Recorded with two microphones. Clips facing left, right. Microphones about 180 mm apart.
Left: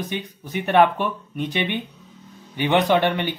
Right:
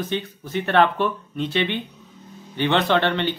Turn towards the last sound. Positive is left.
turn(degrees=15)  # may be behind; listen again after turning